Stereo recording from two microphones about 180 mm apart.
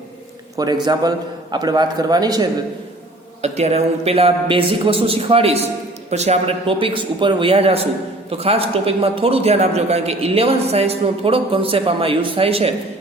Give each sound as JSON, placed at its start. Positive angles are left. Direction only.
{"t": 0.5, "sound": "a man's voice", "side_deg": -20}
{"t": 3.4, "sound": "a man's voice", "side_deg": -35}